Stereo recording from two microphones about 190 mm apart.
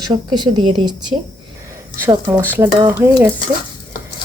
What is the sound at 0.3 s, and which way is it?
Speech, 25° right (ahead or behind).